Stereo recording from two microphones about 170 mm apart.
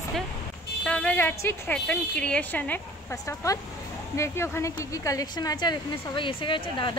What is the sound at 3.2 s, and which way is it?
A woman's voice, 20° left (ahead or behind).